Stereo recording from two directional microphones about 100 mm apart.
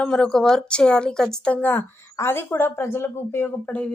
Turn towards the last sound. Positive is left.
turn(degrees=15)  # may be behind; listen again after turning